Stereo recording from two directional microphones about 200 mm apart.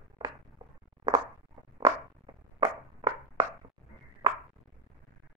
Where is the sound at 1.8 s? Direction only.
15° right (ahead or behind).